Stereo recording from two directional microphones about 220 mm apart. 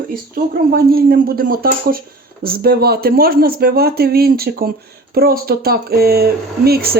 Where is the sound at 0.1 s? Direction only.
40° right (ahead or behind).